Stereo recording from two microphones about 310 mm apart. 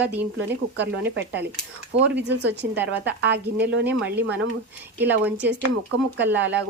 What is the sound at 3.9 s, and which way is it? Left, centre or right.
Speech, centre.